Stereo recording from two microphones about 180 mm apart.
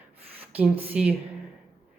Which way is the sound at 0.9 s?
10° right (ahead or behind).